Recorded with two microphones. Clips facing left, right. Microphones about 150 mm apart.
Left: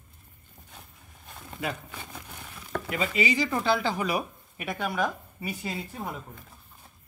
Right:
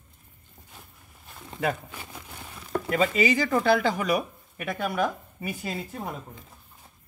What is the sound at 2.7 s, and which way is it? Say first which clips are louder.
Speech: right 5 dB; 45° right (ahead or behind).